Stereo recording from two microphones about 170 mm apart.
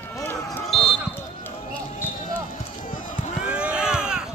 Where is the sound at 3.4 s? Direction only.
5° right (ahead or behind).